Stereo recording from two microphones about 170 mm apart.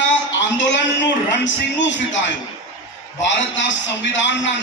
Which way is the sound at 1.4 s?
90° left.